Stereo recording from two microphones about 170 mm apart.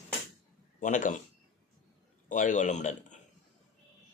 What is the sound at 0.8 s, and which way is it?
Speech, 50° left (ahead or behind).